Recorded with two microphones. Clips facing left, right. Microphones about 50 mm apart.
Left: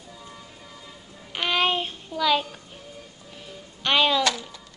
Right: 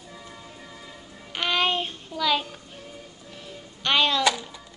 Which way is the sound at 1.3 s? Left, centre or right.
Centre.